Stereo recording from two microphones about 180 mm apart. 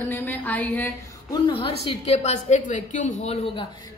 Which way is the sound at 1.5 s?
30° left (ahead or behind).